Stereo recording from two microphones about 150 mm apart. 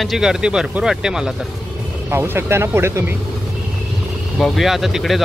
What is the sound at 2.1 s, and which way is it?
Speech, 15° right (ahead or behind).